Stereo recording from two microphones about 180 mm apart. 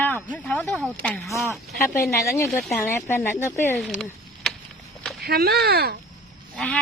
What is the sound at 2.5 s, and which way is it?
Speech, centre (ahead or behind).